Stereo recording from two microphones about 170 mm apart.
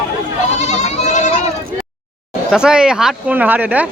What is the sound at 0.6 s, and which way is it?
Speech, 40° left (ahead or behind).